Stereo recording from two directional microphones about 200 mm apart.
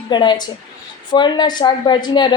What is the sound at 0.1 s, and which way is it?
A woman's voice, 20° left (ahead or behind).